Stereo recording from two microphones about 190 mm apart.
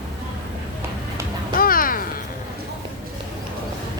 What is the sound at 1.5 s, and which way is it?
Music, 50° left (ahead or behind).